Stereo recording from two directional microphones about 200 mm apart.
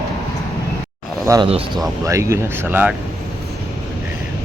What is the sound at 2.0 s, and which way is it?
Speech, 15° right (ahead or behind).